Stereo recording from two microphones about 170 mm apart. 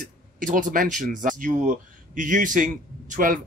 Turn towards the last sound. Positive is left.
turn(degrees=-50)  # may be behind; listen again after turning